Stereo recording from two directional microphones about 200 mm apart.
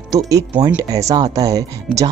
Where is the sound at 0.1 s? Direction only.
15° right (ahead or behind).